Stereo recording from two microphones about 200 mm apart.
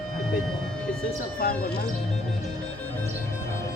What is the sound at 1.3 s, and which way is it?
Speech, 45° left (ahead or behind).